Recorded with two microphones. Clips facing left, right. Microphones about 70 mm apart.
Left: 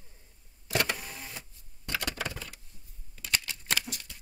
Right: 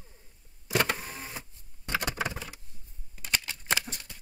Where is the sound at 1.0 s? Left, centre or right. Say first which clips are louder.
Right 3 dB; right.